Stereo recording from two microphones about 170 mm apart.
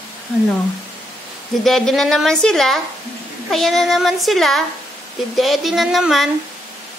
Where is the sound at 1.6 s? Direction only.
Centre (ahead or behind).